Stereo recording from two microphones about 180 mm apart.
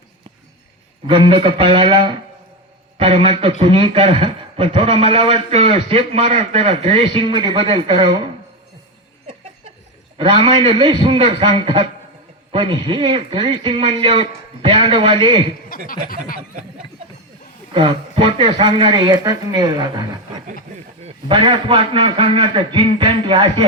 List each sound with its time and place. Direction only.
1.0 s a man's voice: 30° right (ahead or behind)
10.2 s a man's voice: 30° right (ahead or behind)
15.7 s speech: 50° left (ahead or behind)
17.7 s a man's voice: 30° right (ahead or behind)